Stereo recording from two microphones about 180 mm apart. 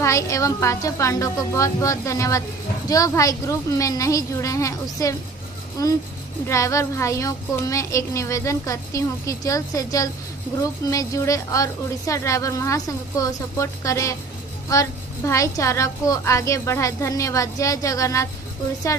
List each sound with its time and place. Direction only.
0.0 s a woman's voice: 15° left (ahead or behind)